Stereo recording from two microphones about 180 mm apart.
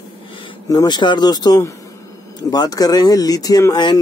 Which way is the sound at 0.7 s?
20° left (ahead or behind).